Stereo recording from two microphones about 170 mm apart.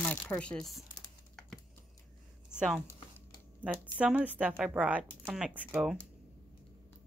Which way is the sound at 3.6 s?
5° right (ahead or behind).